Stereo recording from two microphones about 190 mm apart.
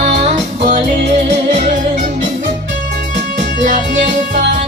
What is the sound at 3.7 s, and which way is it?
Music, 45° right (ahead or behind).